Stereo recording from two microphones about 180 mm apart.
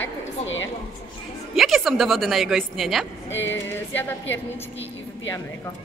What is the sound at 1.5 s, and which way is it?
Speech, centre (ahead or behind).